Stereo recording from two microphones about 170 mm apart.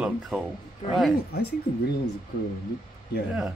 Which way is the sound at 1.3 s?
65° left (ahead or behind).